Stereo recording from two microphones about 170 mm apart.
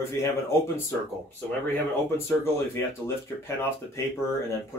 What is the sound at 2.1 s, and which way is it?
Speech, 15° left (ahead or behind).